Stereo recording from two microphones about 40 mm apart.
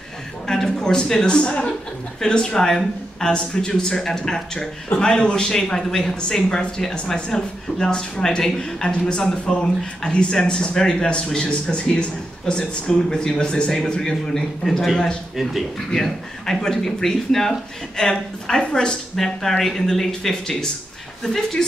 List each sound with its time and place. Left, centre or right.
0.5 s a man's voice: centre
15.9 s a man's voice: centre
19.1 s speech: centre